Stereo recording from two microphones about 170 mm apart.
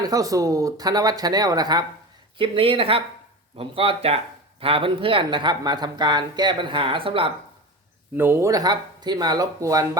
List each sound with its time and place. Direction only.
0.0 s speech: 20° right (ahead or behind)
8.1 s speech: 10° right (ahead or behind)